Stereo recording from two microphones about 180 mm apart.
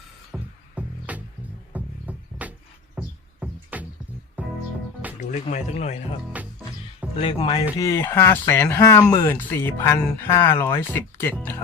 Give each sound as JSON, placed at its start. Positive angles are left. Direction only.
{"t": 0.3, "sound": "music", "side_deg": -10}
{"t": 5.3, "sound": "speech", "side_deg": 40}
{"t": 6.3, "sound": "music", "side_deg": -10}
{"t": 7.2, "sound": "speech", "side_deg": 25}
{"t": 7.8, "sound": "speech", "side_deg": 15}